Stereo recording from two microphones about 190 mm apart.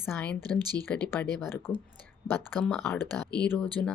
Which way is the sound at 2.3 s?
10° left (ahead or behind).